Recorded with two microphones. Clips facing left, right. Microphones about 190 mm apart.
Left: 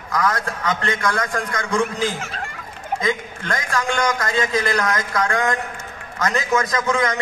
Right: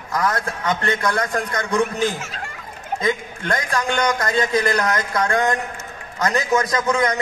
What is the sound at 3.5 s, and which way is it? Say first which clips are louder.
A man's voice: right 1 dB; 20° right (ahead or behind).